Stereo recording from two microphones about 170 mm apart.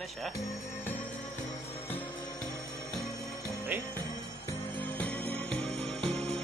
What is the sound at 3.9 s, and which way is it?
Jingle bell, 20° right (ahead or behind).